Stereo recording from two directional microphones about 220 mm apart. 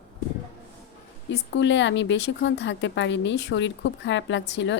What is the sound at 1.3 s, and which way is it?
A woman's voice, 55° left (ahead or behind).